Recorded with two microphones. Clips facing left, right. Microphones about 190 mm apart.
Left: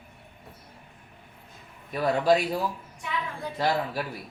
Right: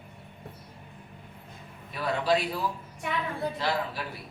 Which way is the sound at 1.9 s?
45° left (ahead or behind).